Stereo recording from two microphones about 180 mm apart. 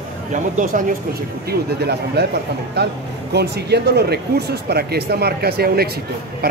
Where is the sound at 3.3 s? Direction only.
65° right (ahead or behind).